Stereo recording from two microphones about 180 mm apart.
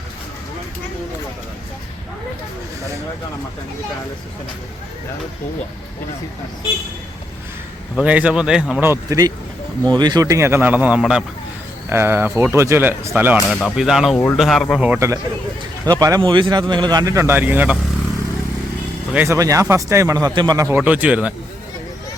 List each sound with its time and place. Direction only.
7.9 s speech: 5° right (ahead or behind)
8.9 s speech: 20° right (ahead or behind)
13.5 s speech: 5° left (ahead or behind)
19.1 s speech: 15° right (ahead or behind)